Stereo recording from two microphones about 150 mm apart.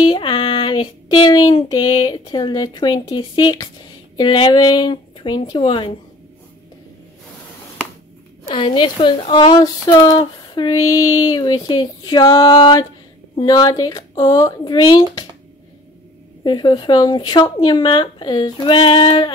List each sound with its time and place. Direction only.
0.0 s speech: 30° left (ahead or behind)
8.5 s speech: 35° left (ahead or behind)
16.4 s speech: 30° left (ahead or behind)